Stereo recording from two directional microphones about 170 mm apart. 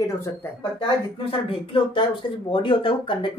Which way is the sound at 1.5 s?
30° left (ahead or behind).